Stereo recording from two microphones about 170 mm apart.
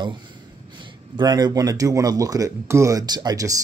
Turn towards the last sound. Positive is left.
turn(degrees=-20)  # may be behind; listen again after turning